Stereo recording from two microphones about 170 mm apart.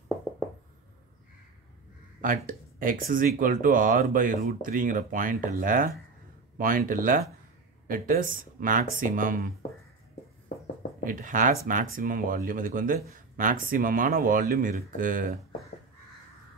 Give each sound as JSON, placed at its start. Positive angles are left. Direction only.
{"t": 2.2, "sound": "speech", "side_deg": -55}
{"t": 6.9, "sound": "speech", "side_deg": -55}
{"t": 11.1, "sound": "speech", "side_deg": -50}